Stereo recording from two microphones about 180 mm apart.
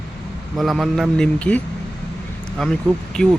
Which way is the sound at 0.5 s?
Centre (ahead or behind).